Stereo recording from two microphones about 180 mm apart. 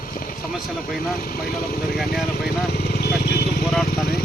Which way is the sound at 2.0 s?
Centre (ahead or behind).